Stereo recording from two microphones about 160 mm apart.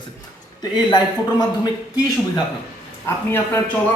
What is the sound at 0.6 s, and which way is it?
A man's voice, 25° left (ahead or behind).